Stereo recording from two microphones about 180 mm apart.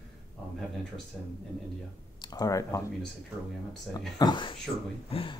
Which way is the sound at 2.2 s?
20° left (ahead or behind).